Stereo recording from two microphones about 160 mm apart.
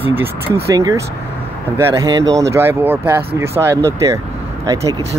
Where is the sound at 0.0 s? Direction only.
15° right (ahead or behind).